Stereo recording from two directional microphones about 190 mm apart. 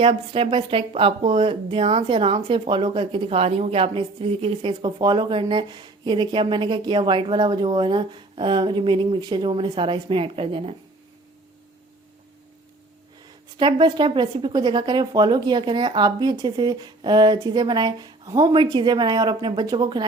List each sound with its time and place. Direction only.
0.0 s speech: 30° right (ahead or behind)
13.6 s speech: 25° right (ahead or behind)